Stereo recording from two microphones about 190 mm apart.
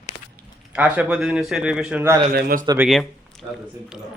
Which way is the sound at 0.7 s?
5° right (ahead or behind).